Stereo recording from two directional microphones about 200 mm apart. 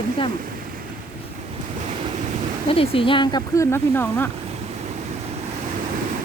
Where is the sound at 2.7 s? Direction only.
25° left (ahead or behind); by 4.3 s 10° left (ahead or behind).